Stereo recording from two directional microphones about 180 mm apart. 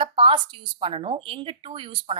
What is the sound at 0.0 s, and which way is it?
A woman's voice, 30° right (ahead or behind).